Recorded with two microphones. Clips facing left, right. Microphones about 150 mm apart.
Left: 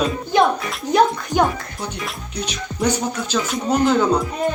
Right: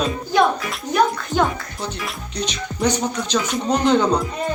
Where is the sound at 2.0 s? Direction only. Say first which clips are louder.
Right 1 dB; 10° left (ahead or behind).